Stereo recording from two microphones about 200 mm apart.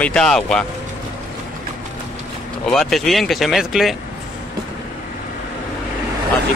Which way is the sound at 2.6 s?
Centre (ahead or behind).